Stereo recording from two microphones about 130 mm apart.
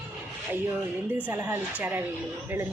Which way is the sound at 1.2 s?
15° right (ahead or behind).